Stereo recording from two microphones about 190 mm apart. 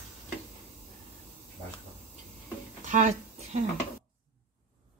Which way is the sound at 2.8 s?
40° right (ahead or behind).